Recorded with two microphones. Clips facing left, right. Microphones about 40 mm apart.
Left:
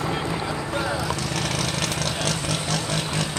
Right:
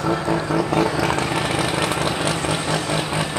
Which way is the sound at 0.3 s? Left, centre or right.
Right.